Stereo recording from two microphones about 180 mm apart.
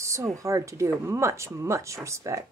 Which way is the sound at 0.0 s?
15° right (ahead or behind).